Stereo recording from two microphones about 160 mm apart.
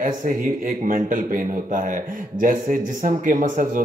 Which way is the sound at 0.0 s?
55° right (ahead or behind).